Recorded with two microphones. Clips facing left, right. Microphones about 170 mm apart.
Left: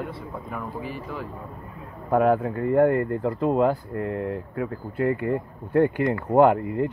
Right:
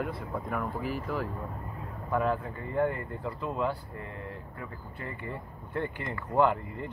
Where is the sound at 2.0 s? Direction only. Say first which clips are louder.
Left 9 dB; 50° left (ahead or behind).